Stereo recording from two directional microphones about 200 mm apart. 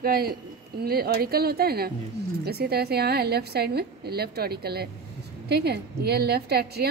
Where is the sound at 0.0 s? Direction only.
50° right (ahead or behind).